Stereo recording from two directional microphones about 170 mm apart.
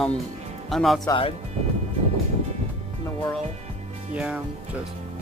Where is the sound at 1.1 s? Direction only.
35° left (ahead or behind).